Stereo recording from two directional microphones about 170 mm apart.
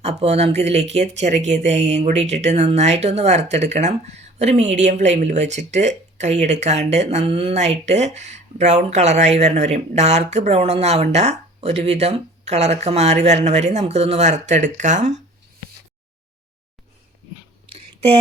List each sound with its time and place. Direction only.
0.0 s speech: 40° right (ahead or behind)